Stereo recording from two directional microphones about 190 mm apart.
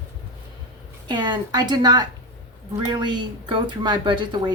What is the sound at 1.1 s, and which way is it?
Speech, 25° right (ahead or behind).